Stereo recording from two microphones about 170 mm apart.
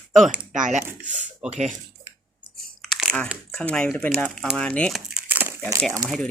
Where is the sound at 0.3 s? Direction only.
50° right (ahead or behind).